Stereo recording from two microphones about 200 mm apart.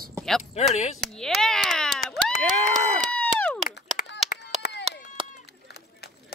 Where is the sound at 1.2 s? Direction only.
Centre (ahead or behind).